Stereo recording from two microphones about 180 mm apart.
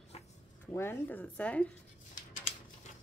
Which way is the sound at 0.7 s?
15° left (ahead or behind).